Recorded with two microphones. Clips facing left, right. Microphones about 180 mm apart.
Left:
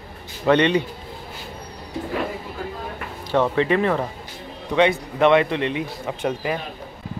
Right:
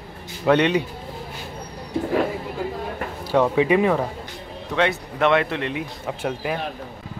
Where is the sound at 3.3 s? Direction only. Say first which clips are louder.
Right 1 dB; 10° right (ahead or behind).